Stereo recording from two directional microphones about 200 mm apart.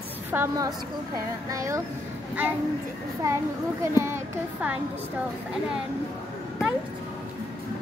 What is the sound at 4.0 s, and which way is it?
Speech, 10° right (ahead or behind).